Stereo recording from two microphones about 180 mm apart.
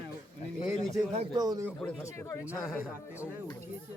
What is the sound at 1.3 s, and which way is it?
Speech, 20° right (ahead or behind).